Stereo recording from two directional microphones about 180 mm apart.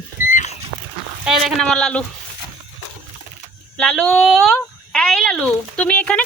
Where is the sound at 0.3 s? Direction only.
45° left (ahead or behind).